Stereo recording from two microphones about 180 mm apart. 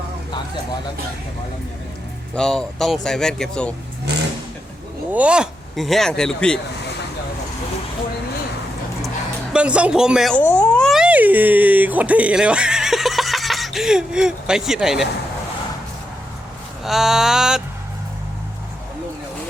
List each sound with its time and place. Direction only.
2.3 s speech: 5° left (ahead or behind)
4.1 s vehicle: 65° right (ahead or behind)
5.1 s speech: 5° right (ahead or behind)
9.5 s speech: 5° right (ahead or behind)
16.8 s speech: centre (ahead or behind)